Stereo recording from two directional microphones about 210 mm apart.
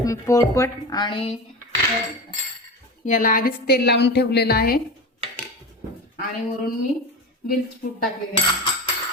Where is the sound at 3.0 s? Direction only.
40° left (ahead or behind).